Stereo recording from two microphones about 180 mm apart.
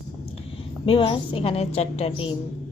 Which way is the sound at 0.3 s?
30° left (ahead or behind).